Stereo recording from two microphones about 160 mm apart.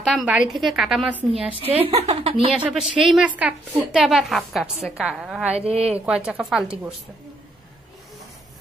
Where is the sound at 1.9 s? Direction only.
40° right (ahead or behind).